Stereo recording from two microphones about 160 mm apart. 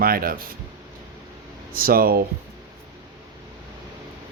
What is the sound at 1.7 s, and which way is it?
Speech, 65° right (ahead or behind).